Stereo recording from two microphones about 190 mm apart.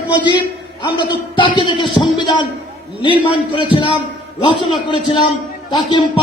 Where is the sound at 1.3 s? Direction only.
25° left (ahead or behind).